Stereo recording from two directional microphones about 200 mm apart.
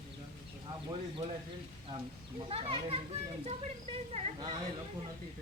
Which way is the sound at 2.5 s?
30° right (ahead or behind).